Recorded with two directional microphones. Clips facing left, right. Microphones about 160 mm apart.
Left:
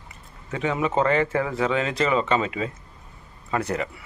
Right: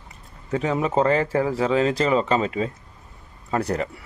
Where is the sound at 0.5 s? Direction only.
35° right (ahead or behind).